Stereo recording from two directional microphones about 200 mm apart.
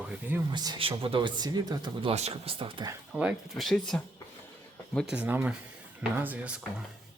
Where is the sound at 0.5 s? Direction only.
20° right (ahead or behind).